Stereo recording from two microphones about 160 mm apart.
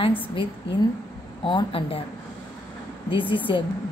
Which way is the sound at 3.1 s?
30° left (ahead or behind).